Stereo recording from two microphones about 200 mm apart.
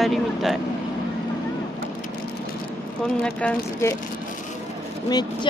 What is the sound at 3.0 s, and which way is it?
Humming, 5° left (ahead or behind).